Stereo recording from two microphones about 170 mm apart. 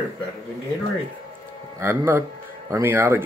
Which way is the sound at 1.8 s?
15° right (ahead or behind).